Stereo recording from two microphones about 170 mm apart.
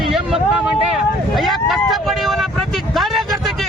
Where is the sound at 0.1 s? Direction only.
Centre (ahead or behind).